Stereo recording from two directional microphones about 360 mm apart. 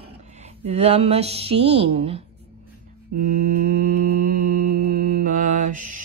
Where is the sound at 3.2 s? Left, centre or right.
Right.